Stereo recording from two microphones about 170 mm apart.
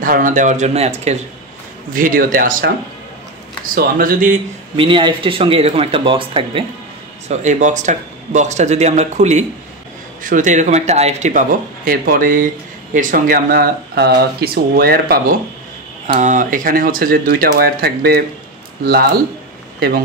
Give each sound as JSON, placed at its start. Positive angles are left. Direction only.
{"t": 0.0, "sound": "speech", "side_deg": -50}
{"t": 2.0, "sound": "speech", "side_deg": -55}
{"t": 3.7, "sound": "speech", "side_deg": -55}
{"t": 4.7, "sound": "speech", "side_deg": -30}
{"t": 7.2, "sound": "speech", "side_deg": -45}
{"t": 16.1, "sound": "speech", "side_deg": -50}